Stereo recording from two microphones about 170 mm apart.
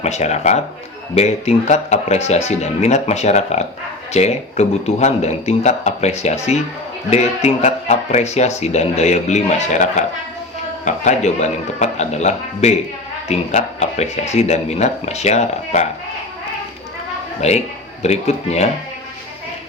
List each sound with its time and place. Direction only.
0.0 s a man's voice: 40° left (ahead or behind)
17.4 s speech: 40° left (ahead or behind)